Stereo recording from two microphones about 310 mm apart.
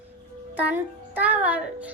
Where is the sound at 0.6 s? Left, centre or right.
Centre.